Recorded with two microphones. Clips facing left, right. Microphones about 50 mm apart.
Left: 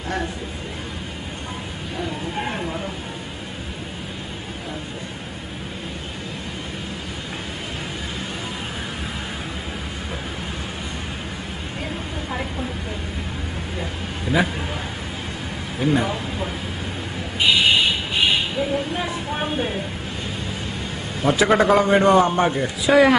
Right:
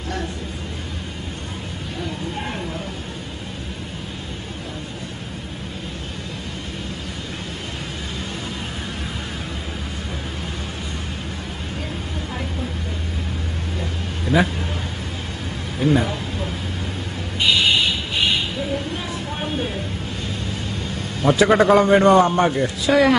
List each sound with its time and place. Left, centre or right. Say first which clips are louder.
13.7 s vehicle: even; centre
15.8 s a sound: right 1 dB; centre
21.2 s a man's voice: right 2 dB; centre